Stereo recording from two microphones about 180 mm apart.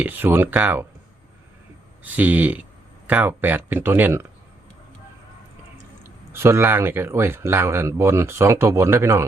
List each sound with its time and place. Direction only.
0.0 s speech: 10° right (ahead or behind)
2.0 s speech: 10° right (ahead or behind)
6.0 s speech: 15° right (ahead or behind)